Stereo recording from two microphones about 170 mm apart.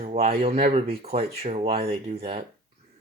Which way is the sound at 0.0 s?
40° right (ahead or behind).